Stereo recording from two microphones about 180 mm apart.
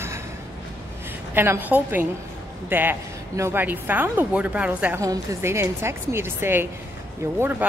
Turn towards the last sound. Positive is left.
turn(degrees=-10)  # may be behind; listen again after turning